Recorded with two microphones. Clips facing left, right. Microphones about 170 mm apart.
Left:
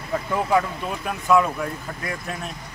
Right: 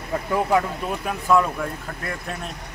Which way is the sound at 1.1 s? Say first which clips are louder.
Left 1 dB; centre (ahead or behind).